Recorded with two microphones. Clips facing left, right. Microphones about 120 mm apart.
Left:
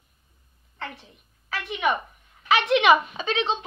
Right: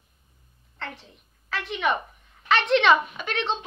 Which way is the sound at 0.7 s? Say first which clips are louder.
Left 1 dB; 5° left (ahead or behind).